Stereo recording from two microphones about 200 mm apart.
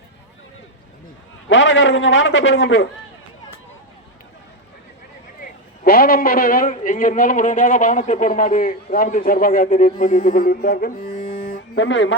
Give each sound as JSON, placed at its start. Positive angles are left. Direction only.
{"t": 1.5, "sound": "a man's voice", "side_deg": 70}
{"t": 5.4, "sound": "a man's voice", "side_deg": 45}
{"t": 11.4, "sound": "a sound", "side_deg": 55}